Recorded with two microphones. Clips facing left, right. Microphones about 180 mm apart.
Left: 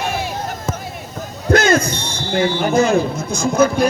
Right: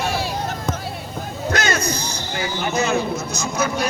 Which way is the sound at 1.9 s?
30° left (ahead or behind).